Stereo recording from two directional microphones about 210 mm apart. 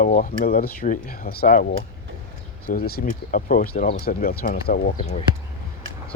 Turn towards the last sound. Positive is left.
turn(degrees=25)  # may be behind; listen again after turning